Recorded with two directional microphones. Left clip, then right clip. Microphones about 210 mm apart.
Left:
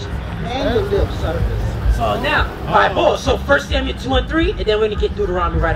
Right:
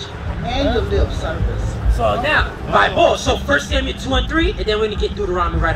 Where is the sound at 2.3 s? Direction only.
55° right (ahead or behind).